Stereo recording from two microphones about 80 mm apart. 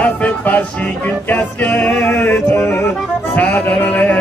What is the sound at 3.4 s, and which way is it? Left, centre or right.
Male singing, centre.